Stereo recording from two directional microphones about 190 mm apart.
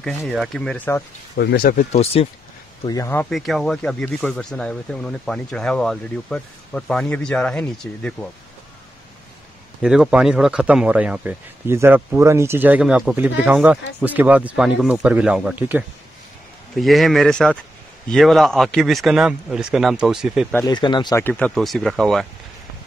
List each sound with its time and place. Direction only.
0.3 s speech: centre (ahead or behind)
1.3 s speech: 60° left (ahead or behind); by 2.2 s 35° left (ahead or behind)
2.8 s speech: 20° left (ahead or behind)
3.3 s speech: centre (ahead or behind)
9.8 s a man's voice: 5° right (ahead or behind)
20.5 s speech: 20° left (ahead or behind)
21.2 s speech: 10° left (ahead or behind)